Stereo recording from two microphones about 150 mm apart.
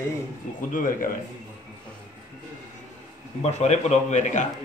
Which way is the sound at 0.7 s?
65° left (ahead or behind).